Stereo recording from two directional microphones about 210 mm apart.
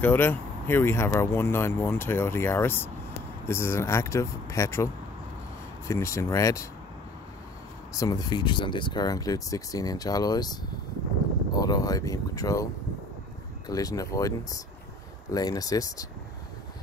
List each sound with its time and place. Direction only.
0.0 s speech: 10° left (ahead or behind)
5.9 s speech: 15° left (ahead or behind)
7.9 s speech: 15° left (ahead or behind)
13.7 s speech: 15° left (ahead or behind)